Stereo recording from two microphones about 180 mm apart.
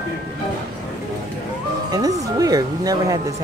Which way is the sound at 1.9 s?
20° right (ahead or behind).